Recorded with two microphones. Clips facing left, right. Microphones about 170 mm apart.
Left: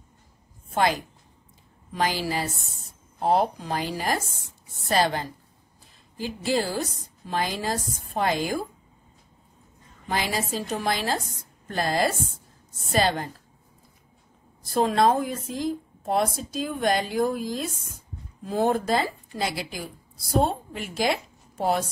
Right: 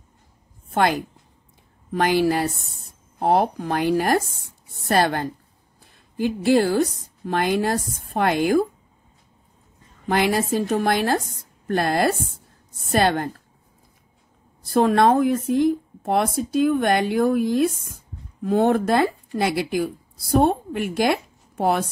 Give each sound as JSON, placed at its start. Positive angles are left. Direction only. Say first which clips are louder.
{"t": 0.7, "sound": "a woman's voice", "louder": "right 3 dB", "side_deg": -60}
{"t": 10.0, "sound": "speech", "louder": "right 7 dB", "side_deg": -60}
{"t": 14.6, "sound": "a woman's voice", "louder": "right 4 dB", "side_deg": -60}